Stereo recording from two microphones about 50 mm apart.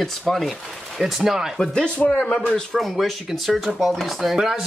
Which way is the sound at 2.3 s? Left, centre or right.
Centre.